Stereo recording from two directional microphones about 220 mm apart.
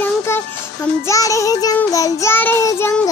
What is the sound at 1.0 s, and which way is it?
Child singing, 15° left (ahead or behind).